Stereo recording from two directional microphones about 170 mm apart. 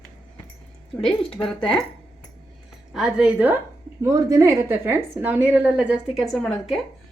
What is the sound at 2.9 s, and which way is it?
A woman's voice, 5° right (ahead or behind).